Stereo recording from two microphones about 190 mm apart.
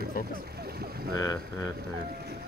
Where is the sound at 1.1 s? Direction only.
20° left (ahead or behind).